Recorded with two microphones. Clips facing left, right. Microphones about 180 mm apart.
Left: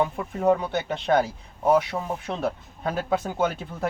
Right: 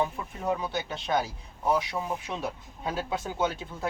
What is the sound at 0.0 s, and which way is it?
Speech, 60° left (ahead or behind).